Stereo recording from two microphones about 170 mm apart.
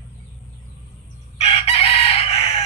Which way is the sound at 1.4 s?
40° left (ahead or behind).